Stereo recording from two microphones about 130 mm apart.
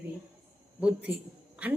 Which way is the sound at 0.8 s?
10° right (ahead or behind).